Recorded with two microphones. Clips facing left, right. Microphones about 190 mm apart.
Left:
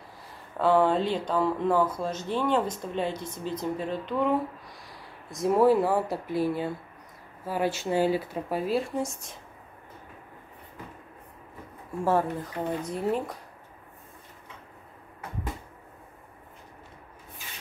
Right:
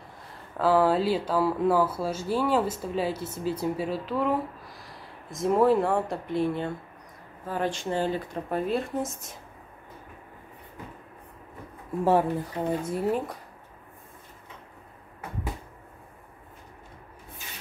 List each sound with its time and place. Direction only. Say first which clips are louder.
0.6 s speech: even; 5° right (ahead or behind)
12.0 s speech: right 3 dB; 15° right (ahead or behind)
12.9 s speech: even; 5° right (ahead or behind)